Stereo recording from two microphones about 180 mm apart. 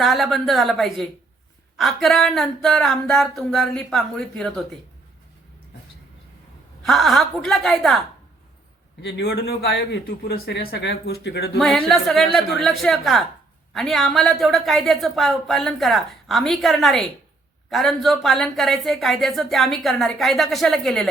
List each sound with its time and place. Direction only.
0.0 s speech: centre (ahead or behind)
6.8 s speech: centre (ahead or behind)
9.0 s speech: 75° left (ahead or behind)
11.6 s speech: centre (ahead or behind)